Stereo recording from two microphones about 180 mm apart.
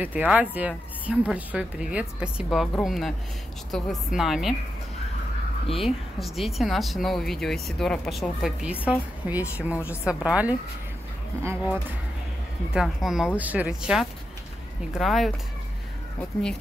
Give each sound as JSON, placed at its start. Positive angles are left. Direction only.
{"t": 0.0, "sound": "a woman's voice", "side_deg": -10}
{"t": 5.8, "sound": "a woman's voice", "side_deg": 0}
{"t": 12.7, "sound": "a woman's voice", "side_deg": 0}